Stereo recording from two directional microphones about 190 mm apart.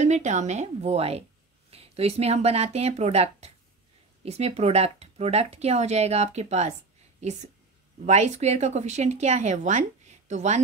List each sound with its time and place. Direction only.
0.0 s speech: 40° right (ahead or behind)
8.0 s speech: 35° right (ahead or behind)